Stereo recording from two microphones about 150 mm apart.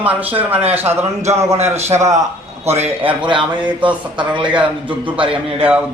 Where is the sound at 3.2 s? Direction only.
35° right (ahead or behind).